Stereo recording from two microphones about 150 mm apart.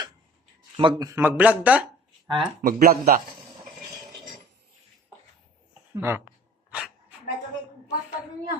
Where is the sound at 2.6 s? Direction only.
70° right (ahead or behind).